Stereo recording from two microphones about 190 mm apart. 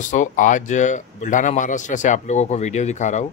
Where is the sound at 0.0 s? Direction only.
40° left (ahead or behind).